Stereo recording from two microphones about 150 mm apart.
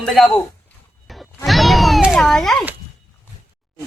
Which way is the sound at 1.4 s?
Centre (ahead or behind).